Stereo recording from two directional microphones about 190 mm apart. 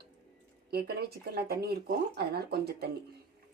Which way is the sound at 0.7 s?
55° right (ahead or behind).